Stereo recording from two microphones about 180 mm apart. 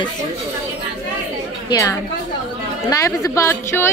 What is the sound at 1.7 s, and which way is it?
A woman's voice, 20° left (ahead or behind).